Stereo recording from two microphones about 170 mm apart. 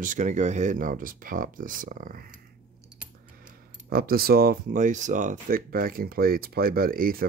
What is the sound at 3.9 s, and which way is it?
Speech, 60° right (ahead or behind).